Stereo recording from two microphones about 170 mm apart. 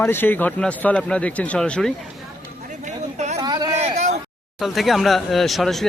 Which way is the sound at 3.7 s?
40° right (ahead or behind).